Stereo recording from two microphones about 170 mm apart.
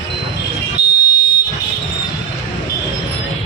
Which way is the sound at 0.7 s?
70° left (ahead or behind).